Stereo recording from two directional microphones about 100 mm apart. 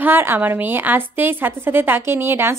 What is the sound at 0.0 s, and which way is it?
Speech, 20° right (ahead or behind).